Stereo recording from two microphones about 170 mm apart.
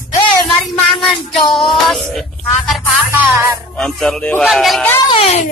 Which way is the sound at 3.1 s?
10° right (ahead or behind).